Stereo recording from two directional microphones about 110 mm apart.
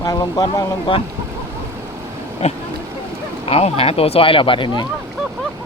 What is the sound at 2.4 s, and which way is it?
Speech, 75° left (ahead or behind).